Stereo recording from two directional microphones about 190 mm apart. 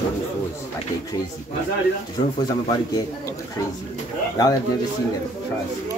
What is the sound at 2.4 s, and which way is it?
A man's voice, 20° left (ahead or behind).